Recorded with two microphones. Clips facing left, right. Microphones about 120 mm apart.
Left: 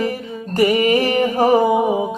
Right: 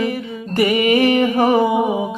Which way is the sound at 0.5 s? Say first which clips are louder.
Even; 35° left (ahead or behind).